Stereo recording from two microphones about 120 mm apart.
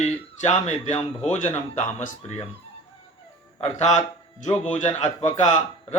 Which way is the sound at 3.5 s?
70° left (ahead or behind).